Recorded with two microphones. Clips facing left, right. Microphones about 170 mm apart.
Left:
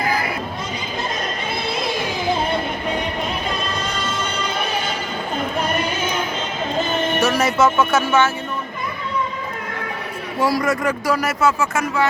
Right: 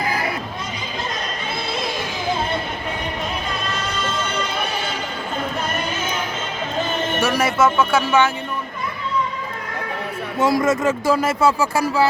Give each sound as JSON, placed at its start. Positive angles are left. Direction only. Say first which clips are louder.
{"t": 7.2, "sound": "speech", "louder": "even", "side_deg": -10}
{"t": 10.3, "sound": "speech", "louder": "right 2 dB", "side_deg": -20}